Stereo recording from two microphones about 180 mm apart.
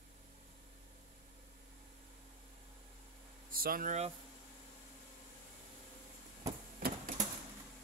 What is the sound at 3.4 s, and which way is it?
Speech, 55° right (ahead or behind).